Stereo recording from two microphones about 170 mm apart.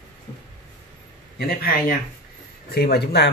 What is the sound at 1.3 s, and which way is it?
A man's voice, 60° left (ahead or behind).